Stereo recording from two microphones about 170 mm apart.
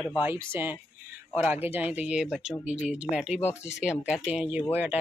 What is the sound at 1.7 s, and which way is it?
Speech, 10° right (ahead or behind).